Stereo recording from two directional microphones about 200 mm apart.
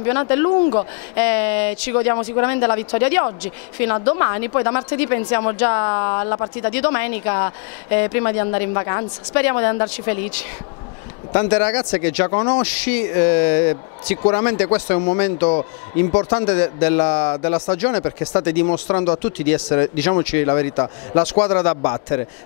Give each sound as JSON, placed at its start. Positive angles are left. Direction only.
{"t": 0.0, "sound": "a woman's voice", "side_deg": 15}
{"t": 11.5, "sound": "a woman's voice", "side_deg": 10}
{"t": 11.8, "sound": "speech", "side_deg": 20}
{"t": 12.6, "sound": "a woman's voice", "side_deg": 10}
{"t": 16.1, "sound": "speech", "side_deg": 25}
{"t": 16.8, "sound": "a woman's voice", "side_deg": 10}
{"t": 18.7, "sound": "speech", "side_deg": 25}
{"t": 19.2, "sound": "speech", "side_deg": 15}
{"t": 21.5, "sound": "a woman's voice", "side_deg": 10}
{"t": 21.8, "sound": "speech", "side_deg": 25}